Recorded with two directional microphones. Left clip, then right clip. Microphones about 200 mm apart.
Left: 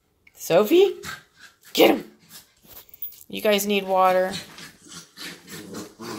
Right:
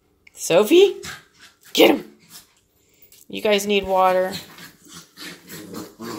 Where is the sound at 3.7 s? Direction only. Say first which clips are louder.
Right 2 dB; 5° right (ahead or behind).